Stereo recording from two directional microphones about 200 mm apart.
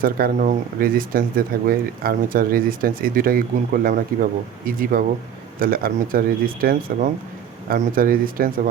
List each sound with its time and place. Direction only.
0.0 s speech: 45° right (ahead or behind)